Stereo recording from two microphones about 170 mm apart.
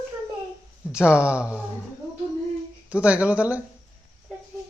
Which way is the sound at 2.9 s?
10° right (ahead or behind).